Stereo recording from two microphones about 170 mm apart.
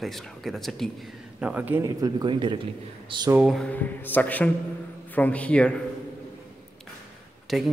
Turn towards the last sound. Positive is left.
turn(degrees=0)  # may be behind; listen again after turning